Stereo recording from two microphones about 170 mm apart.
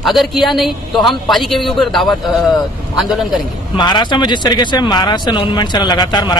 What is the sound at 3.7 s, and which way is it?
Speech, 25° left (ahead or behind).